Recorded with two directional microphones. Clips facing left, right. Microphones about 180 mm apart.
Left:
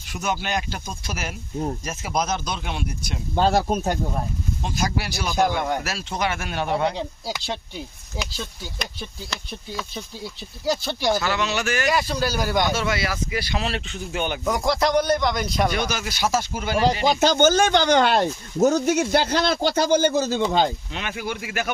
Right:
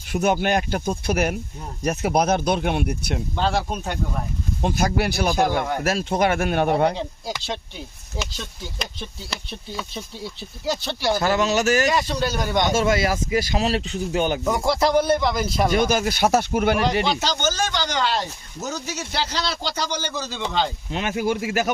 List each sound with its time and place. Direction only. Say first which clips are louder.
0.1 s speech: right 6 dB; 55° right (ahead or behind)
3.3 s speech: left 5 dB; 45° left (ahead or behind)
4.6 s speech: right 6 dB; 55° right (ahead or behind)
7.3 s speech: even; 10° left (ahead or behind)
11.2 s speech: right 5 dB; 45° right (ahead or behind)
11.9 s speech: even; centre (ahead or behind)
12.7 s speech: right 5 dB; 45° right (ahead or behind)
14.4 s speech: right 1 dB; centre (ahead or behind)
15.7 s speech: right 6 dB; 45° right (ahead or behind)
17.1 s speech: left 6 dB; 50° left (ahead or behind)
20.9 s speech: right 6 dB; 45° right (ahead or behind)